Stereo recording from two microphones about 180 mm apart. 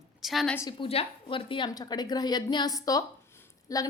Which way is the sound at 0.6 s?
25° left (ahead or behind).